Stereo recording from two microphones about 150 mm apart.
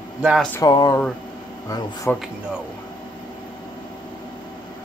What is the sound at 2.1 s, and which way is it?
Speech, 10° left (ahead or behind).